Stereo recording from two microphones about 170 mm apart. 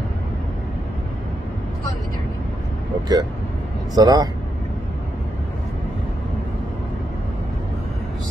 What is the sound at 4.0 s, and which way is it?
Speech, 20° right (ahead or behind).